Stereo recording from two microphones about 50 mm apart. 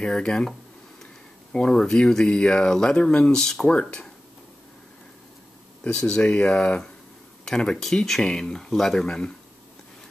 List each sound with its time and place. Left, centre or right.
0.0 s speech: centre
1.5 s speech: centre
5.9 s speech: centre